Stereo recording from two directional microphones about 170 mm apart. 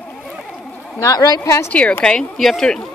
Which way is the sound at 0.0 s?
5° left (ahead or behind).